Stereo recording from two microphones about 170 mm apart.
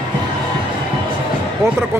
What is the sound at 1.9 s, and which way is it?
Speech, 15° right (ahead or behind).